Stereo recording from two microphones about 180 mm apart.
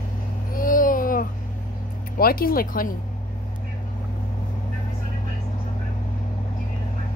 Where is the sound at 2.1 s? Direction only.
55° left (ahead or behind).